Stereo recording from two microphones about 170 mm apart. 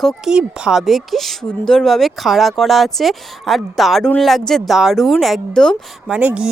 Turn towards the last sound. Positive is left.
turn(degrees=-5)  # may be behind; listen again after turning